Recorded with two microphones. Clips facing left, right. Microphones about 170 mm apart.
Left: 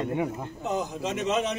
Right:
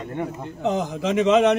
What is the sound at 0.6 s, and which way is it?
Speech, 90° right.